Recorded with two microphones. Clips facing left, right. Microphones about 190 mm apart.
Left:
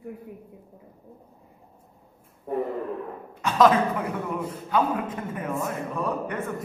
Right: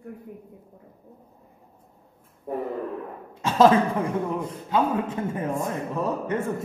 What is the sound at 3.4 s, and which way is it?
Speech, 25° right (ahead or behind).